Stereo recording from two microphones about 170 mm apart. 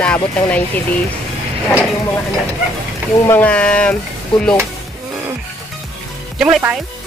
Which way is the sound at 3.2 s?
10° left (ahead or behind).